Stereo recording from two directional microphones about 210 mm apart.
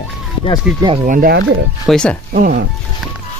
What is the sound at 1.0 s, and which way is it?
Speech, 45° right (ahead or behind).